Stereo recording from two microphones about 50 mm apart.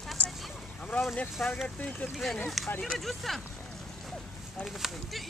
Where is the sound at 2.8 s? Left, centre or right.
Centre.